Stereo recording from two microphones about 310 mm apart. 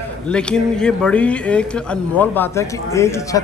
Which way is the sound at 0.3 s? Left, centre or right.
Centre.